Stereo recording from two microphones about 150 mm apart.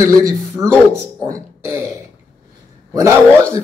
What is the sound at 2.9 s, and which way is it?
Speech, 20° right (ahead or behind).